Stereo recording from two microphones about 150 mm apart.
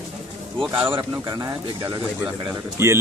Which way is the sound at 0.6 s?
35° right (ahead or behind).